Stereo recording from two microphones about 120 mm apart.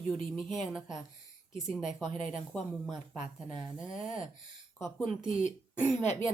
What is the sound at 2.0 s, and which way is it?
Speech, 45° right (ahead or behind).